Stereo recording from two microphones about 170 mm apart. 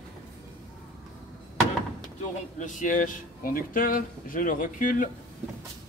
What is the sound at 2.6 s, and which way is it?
Speech, 50° left (ahead or behind).